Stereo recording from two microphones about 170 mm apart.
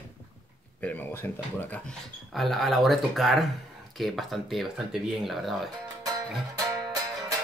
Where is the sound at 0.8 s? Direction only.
10° left (ahead or behind).